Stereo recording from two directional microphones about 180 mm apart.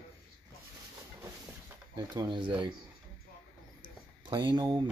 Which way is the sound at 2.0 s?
25° right (ahead or behind).